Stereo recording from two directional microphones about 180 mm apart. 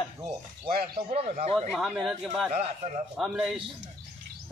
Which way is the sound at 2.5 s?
40° right (ahead or behind).